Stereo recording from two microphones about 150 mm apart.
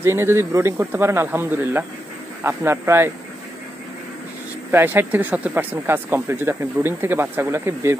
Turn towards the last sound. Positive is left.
turn(degrees=-15)  # may be behind; listen again after turning